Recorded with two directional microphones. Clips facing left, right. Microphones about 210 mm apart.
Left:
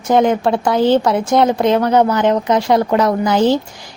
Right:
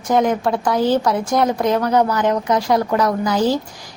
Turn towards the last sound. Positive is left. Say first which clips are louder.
# left 4 dB
turn(degrees=25)  # may be behind; listen again after turning